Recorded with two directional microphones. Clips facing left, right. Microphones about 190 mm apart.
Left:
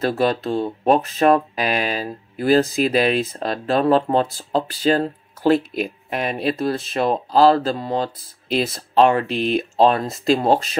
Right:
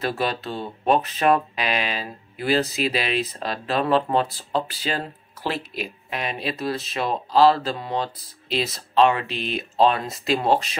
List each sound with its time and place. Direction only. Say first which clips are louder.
0.0 s speech: left 6 dB; 45° left (ahead or behind)